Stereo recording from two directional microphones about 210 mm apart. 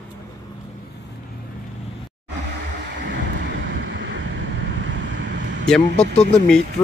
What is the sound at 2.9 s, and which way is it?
Vehicle, 55° right (ahead or behind).